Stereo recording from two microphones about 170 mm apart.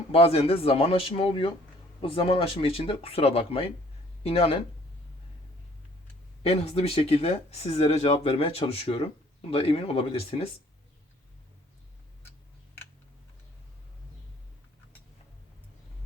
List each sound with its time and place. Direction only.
0.1 s speech: 35° left (ahead or behind)
6.4 s speech: 35° left (ahead or behind)